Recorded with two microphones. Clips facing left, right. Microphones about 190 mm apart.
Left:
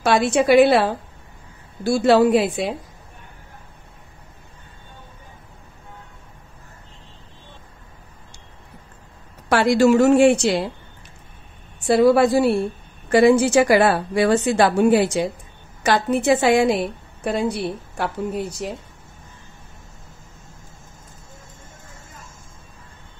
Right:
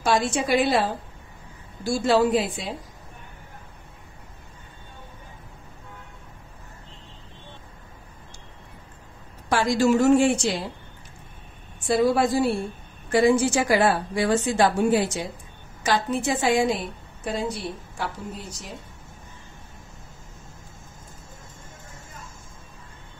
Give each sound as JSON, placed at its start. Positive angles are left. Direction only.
{"t": 0.0, "sound": "a woman's voice", "side_deg": 65}
{"t": 9.5, "sound": "a woman's voice", "side_deg": 70}
{"t": 11.8, "sound": "a woman's voice", "side_deg": 65}